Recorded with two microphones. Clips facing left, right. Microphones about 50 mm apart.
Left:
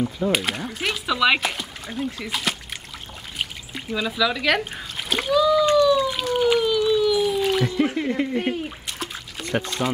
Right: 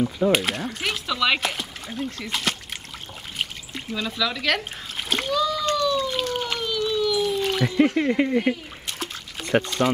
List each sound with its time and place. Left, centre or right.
0.0 s speech: centre
3.3 s a sound: centre
4.9 s splash: centre
8.0 s speech: centre
8.8 s pour: centre